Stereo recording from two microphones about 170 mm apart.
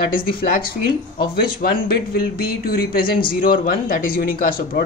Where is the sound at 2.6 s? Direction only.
60° left (ahead or behind).